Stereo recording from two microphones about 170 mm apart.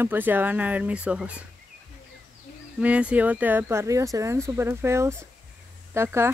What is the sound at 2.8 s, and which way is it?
Speech, 5° right (ahead or behind).